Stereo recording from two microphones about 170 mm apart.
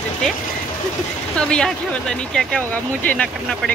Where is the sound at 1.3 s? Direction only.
5° left (ahead or behind).